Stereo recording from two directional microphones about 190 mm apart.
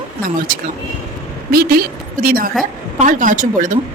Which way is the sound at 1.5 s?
55° right (ahead or behind).